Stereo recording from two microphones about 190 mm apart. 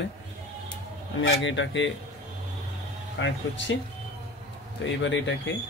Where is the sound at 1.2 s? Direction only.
75° left (ahead or behind).